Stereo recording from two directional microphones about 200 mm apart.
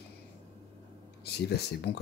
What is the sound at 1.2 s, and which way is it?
Speech, 55° left (ahead or behind).